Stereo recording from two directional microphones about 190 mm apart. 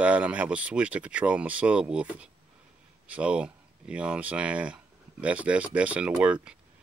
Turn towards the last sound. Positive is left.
turn(degrees=-5)  # may be behind; listen again after turning